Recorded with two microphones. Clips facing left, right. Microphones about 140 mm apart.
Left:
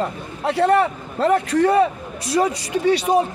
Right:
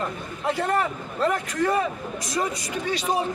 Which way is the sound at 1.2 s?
30° left (ahead or behind).